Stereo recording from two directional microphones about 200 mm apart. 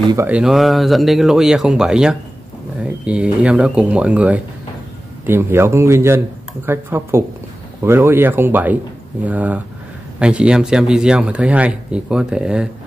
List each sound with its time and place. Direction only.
0.1 s speech: 10° right (ahead or behind)